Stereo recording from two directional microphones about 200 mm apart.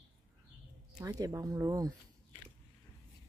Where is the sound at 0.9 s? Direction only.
20° right (ahead or behind).